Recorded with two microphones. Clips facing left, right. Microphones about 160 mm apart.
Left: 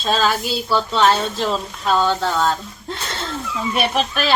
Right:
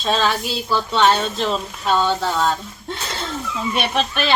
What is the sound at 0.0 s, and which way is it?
A woman's voice, centre (ahead or behind).